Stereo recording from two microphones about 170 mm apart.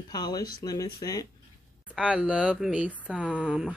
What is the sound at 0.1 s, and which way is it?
Speech, 25° left (ahead or behind).